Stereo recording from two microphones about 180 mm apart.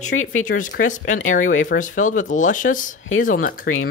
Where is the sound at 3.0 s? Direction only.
90° left.